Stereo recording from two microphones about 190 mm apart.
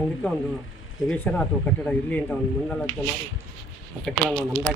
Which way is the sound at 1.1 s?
5° left (ahead or behind).